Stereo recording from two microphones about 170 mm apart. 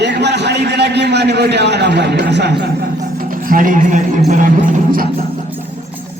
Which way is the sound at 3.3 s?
55° right (ahead or behind).